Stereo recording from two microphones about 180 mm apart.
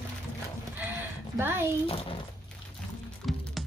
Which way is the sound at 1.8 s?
30° left (ahead or behind).